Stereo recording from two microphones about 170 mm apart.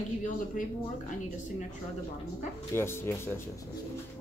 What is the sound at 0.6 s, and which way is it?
Speech, 50° left (ahead or behind).